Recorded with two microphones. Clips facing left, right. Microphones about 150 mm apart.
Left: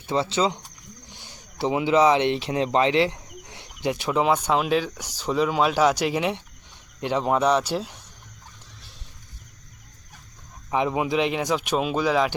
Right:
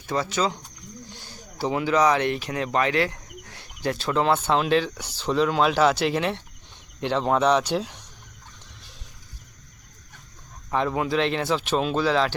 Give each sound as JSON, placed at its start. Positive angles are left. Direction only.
{"t": 0.1, "sound": "speech", "side_deg": 25}
{"t": 2.6, "sound": "cricket", "side_deg": 25}
{"t": 3.8, "sound": "speech", "side_deg": 20}
{"t": 10.7, "sound": "speech", "side_deg": 15}